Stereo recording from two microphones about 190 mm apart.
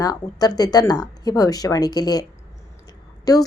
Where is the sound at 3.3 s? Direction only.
20° left (ahead or behind).